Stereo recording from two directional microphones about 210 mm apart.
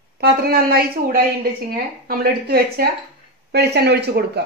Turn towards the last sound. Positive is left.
turn(degrees=-50)  # may be behind; listen again after turning